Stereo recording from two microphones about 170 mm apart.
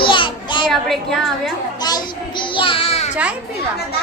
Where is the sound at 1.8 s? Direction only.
25° left (ahead or behind).